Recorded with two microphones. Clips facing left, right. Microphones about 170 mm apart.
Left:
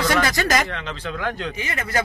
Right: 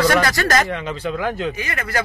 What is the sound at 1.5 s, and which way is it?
Speech, 25° left (ahead or behind).